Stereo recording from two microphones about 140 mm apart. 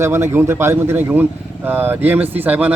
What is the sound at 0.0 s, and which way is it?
A man's voice, 20° right (ahead or behind).